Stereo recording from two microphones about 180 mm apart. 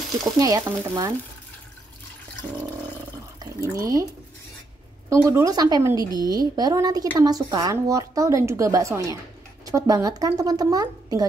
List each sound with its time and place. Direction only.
0.4 s a woman's voice: 20° right (ahead or behind)
3.7 s a woman's voice: 20° right (ahead or behind)
5.1 s a woman's voice: 15° right (ahead or behind)